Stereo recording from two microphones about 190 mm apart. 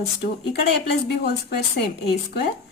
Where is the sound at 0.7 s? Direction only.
60° left (ahead or behind).